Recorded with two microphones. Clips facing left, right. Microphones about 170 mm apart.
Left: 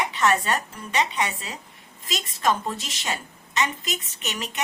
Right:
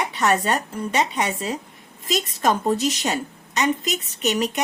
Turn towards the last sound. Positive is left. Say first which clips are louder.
# right 11 dB
turn(degrees=-40)  # may be behind; listen again after turning